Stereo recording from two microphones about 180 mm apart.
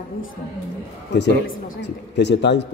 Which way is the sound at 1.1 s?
70° left (ahead or behind).